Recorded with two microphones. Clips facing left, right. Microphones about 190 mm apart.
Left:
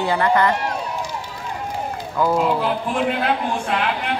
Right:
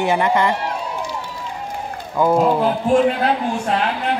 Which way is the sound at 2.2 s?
20° right (ahead or behind).